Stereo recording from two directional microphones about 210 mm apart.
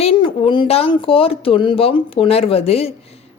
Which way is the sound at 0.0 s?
25° left (ahead or behind).